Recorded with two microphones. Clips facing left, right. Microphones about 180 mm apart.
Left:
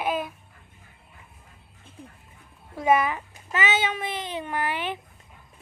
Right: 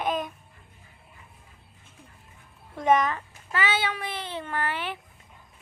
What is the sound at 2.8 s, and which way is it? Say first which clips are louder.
A child's voice: left 1 dB; 5° left (ahead or behind).